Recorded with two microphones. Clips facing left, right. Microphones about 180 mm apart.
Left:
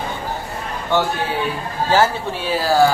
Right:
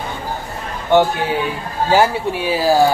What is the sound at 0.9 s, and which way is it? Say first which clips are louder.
A man's voice: right 5 dB; 20° right (ahead or behind).